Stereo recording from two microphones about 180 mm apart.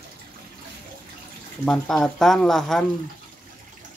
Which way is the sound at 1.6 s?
5° left (ahead or behind).